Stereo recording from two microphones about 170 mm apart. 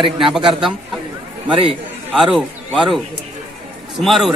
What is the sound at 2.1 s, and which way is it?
Speech, centre (ahead or behind).